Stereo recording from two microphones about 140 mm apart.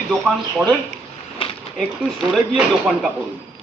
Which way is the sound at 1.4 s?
40° left (ahead or behind).